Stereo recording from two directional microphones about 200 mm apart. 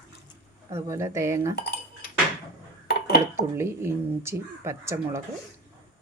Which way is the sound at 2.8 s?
50° left (ahead or behind).